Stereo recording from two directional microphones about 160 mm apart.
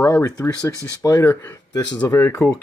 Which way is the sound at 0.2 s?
20° left (ahead or behind).